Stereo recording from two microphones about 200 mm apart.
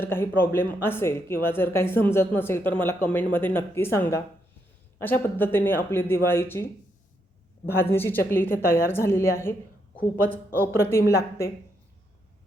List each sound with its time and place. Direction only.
0.0 s a woman's voice: 10° left (ahead or behind)
7.7 s a woman's voice: 10° left (ahead or behind)